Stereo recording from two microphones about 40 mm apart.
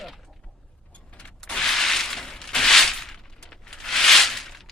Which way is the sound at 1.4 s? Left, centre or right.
Centre.